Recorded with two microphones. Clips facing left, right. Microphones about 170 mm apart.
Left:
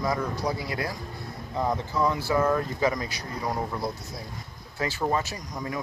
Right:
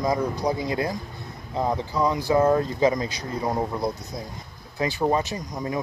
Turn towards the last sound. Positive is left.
turn(degrees=-25)  # may be behind; listen again after turning